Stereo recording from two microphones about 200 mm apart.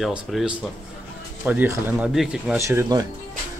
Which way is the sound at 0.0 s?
Centre (ahead or behind).